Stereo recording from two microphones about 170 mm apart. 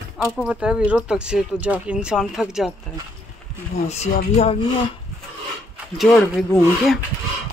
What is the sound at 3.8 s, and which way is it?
Speech, 40° left (ahead or behind).